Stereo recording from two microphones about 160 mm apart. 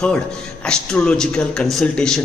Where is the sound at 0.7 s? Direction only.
5° left (ahead or behind).